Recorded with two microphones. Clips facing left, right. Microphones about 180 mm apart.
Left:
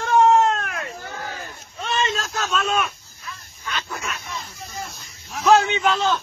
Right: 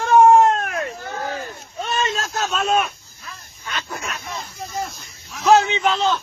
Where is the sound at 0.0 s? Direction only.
50° right (ahead or behind).